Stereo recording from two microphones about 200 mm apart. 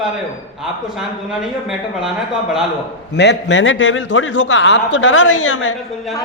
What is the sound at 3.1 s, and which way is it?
A man's voice, 55° left (ahead or behind).